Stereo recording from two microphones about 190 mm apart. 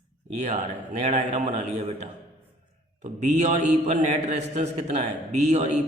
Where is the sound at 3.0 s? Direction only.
35° right (ahead or behind).